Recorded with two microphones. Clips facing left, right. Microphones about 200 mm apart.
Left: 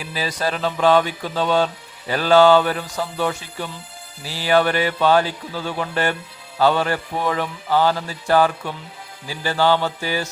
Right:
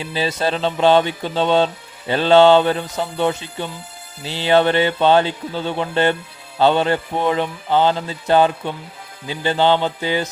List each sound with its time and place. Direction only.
0.0 s music: 25° right (ahead or behind)